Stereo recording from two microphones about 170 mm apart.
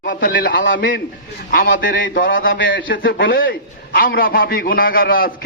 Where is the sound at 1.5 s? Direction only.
60° left (ahead or behind).